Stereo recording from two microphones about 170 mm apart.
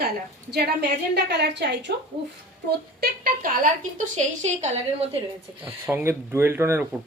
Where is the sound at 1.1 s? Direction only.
85° right.